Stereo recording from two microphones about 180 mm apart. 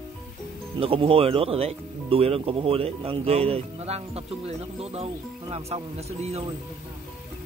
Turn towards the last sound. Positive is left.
turn(degrees=-35)  # may be behind; listen again after turning